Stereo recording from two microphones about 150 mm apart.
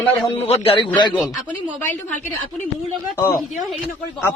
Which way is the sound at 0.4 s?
40° left (ahead or behind).